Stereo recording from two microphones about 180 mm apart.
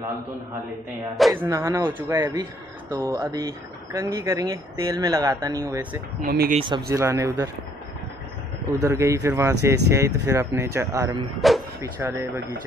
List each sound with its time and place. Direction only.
1.3 s speech: 25° right (ahead or behind)
1.6 s speech: 15° right (ahead or behind)
6.2 s speech: 55° right (ahead or behind)
6.7 s speech: 15° right (ahead or behind)
8.7 s speech: 15° right (ahead or behind)
11.3 s speech: centre (ahead or behind)
11.8 s speech: 10° right (ahead or behind)